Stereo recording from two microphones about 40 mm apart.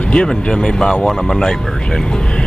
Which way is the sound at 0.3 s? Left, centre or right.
Centre.